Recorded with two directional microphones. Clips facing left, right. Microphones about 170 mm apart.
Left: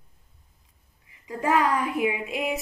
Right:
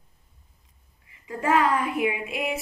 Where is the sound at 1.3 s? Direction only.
15° left (ahead or behind).